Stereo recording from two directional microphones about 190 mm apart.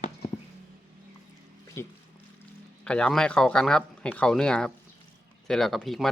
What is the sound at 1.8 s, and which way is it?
Speech, 15° left (ahead or behind).